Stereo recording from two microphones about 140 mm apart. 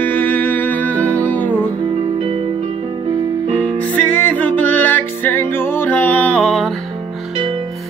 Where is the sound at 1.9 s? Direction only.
40° right (ahead or behind).